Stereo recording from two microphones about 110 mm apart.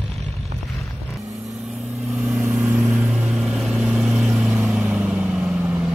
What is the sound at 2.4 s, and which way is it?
Vehicle, 20° right (ahead or behind).